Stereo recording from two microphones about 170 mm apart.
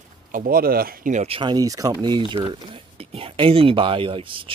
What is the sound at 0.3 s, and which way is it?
Speech, 55° right (ahead or behind).